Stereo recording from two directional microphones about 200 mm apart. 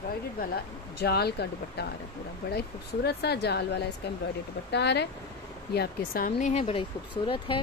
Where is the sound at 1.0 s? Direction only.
55° left (ahead or behind).